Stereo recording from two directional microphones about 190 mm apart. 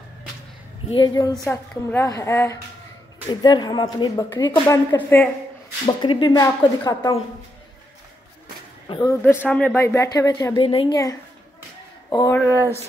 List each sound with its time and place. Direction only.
0.8 s a woman's voice: 25° left (ahead or behind)
1.4 s a woman's voice: 10° left (ahead or behind)
5.9 s a woman's voice: 25° left (ahead or behind)
8.8 s a woman's voice: 20° left (ahead or behind)
12.4 s speech: 10° right (ahead or behind)